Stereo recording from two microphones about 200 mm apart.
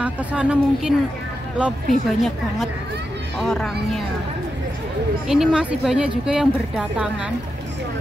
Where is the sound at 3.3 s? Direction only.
Centre (ahead or behind).